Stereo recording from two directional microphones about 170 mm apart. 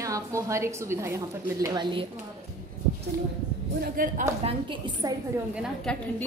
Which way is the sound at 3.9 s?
55° right (ahead or behind).